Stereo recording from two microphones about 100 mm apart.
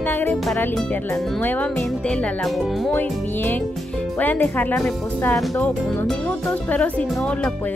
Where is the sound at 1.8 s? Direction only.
10° left (ahead or behind).